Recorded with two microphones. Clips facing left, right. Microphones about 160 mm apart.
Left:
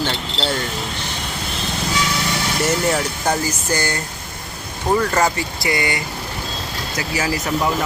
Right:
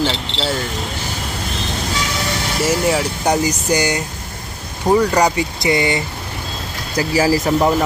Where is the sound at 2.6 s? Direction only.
5° right (ahead or behind); by 6.0 s 20° right (ahead or behind).